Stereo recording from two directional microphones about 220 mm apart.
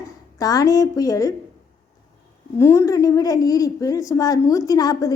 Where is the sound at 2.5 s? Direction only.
10° left (ahead or behind).